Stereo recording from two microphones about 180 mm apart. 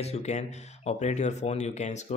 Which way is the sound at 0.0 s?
35° left (ahead or behind).